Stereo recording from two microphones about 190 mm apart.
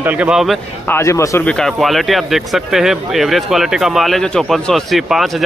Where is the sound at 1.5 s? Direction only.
5° left (ahead or behind).